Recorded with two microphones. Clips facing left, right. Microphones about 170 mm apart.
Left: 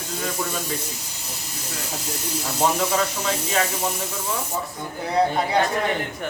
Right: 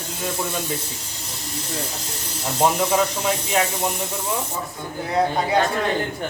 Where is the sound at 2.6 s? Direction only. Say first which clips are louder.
Right 3 dB; 15° right (ahead or behind).